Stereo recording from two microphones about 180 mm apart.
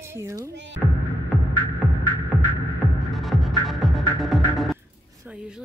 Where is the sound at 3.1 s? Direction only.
Centre (ahead or behind).